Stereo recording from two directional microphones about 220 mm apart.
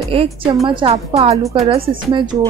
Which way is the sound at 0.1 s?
25° right (ahead or behind).